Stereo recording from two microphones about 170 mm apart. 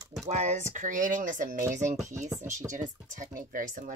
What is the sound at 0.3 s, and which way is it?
Speech, 45° right (ahead or behind).